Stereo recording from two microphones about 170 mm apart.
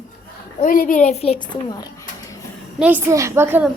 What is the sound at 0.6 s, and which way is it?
Speech, 55° left (ahead or behind).